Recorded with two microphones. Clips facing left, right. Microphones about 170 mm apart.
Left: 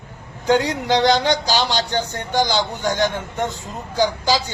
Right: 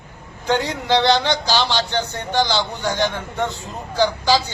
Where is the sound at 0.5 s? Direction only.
15° left (ahead or behind).